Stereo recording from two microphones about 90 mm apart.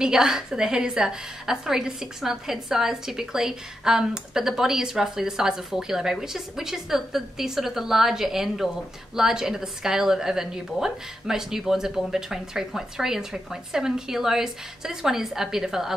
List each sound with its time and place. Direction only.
0.0 s a woman's voice: 5° right (ahead or behind)